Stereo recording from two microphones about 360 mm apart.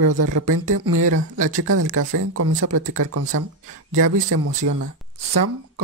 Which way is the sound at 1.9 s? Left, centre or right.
Right.